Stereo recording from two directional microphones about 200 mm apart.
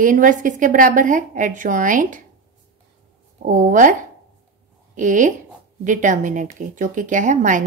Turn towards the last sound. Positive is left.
turn(degrees=-40)  # may be behind; listen again after turning